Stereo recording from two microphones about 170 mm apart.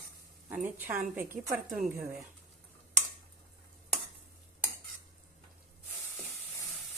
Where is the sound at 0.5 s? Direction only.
10° right (ahead or behind).